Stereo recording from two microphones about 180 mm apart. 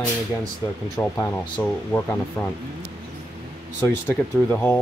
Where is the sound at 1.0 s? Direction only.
10° left (ahead or behind).